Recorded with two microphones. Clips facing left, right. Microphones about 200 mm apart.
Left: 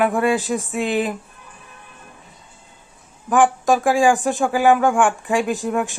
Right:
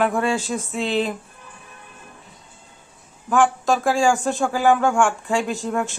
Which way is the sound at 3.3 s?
15° left (ahead or behind).